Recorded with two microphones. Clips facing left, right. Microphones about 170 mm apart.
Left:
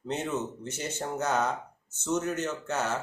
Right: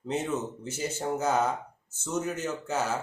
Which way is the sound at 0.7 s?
5° right (ahead or behind).